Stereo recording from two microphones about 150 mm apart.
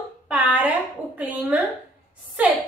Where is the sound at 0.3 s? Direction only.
10° right (ahead or behind).